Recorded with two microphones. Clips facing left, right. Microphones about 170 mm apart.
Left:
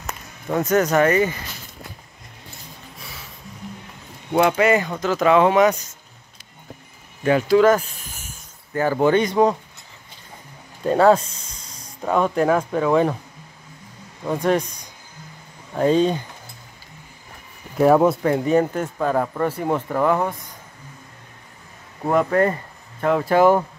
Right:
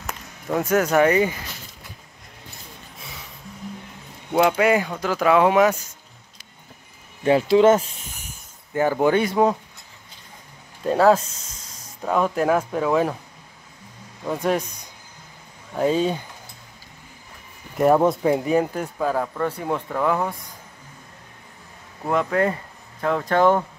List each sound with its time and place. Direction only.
0.0 s speech: 5° right (ahead or behind)
4.3 s speech: 5° right (ahead or behind)
7.2 s speech: 25° right (ahead or behind)
8.9 s speech: 5° right (ahead or behind)
10.8 s speech: centre (ahead or behind)
14.2 s speech: centre (ahead or behind)
15.7 s speech: 5° right (ahead or behind)
17.7 s speech: centre (ahead or behind)
22.3 s speech: centre (ahead or behind)